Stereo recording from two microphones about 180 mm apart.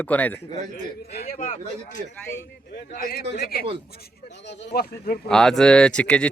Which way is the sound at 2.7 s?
55° left (ahead or behind).